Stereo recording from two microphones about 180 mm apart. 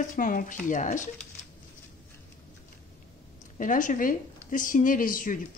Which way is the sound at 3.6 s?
45° left (ahead or behind).